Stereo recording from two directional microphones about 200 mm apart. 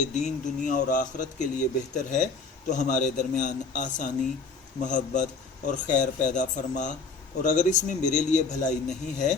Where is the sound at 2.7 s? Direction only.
35° left (ahead or behind).